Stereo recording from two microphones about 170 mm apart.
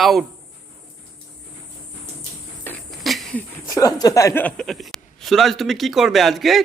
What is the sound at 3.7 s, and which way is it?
Speech, 20° left (ahead or behind).